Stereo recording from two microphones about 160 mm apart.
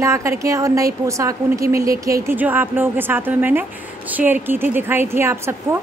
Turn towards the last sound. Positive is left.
turn(degrees=-15)  # may be behind; listen again after turning